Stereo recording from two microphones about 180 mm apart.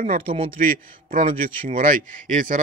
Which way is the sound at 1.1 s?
45° right (ahead or behind).